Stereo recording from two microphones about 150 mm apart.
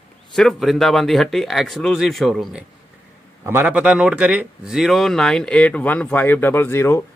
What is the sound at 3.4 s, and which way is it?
Speech, 10° right (ahead or behind).